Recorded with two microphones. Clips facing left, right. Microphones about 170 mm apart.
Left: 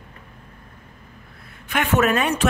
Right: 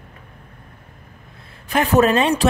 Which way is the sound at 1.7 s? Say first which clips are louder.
Right 4 dB; 35° right (ahead or behind).